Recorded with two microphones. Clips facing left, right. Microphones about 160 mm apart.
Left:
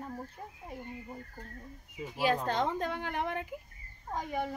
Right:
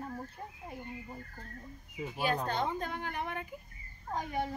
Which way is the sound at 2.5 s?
90° left.